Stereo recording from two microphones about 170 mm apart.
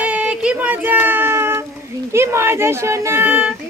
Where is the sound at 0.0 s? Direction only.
10° right (ahead or behind).